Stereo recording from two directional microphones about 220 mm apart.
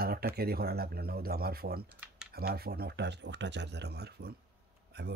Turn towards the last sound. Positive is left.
turn(degrees=-50)  # may be behind; listen again after turning